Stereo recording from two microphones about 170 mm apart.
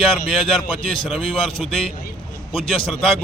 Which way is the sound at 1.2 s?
30° left (ahead or behind).